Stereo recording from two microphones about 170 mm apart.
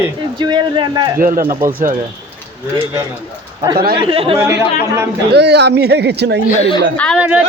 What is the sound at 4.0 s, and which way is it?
Speech, 30° right (ahead or behind).